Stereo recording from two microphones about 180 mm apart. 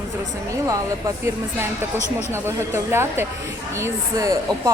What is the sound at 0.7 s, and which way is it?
Speech, 15° right (ahead or behind).